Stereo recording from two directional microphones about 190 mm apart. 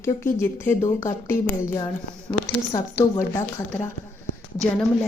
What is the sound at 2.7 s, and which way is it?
A woman's voice, 20° left (ahead or behind).